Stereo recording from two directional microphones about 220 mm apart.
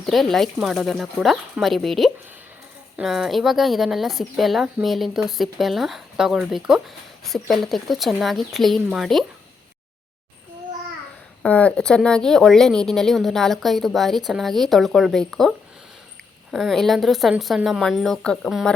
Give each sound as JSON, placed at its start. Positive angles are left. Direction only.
{"t": 0.0, "sound": "speech", "side_deg": 0}
{"t": 11.4, "sound": "speech", "side_deg": 5}